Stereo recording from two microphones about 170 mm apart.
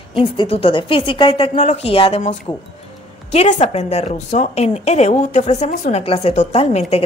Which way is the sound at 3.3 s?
45° left (ahead or behind).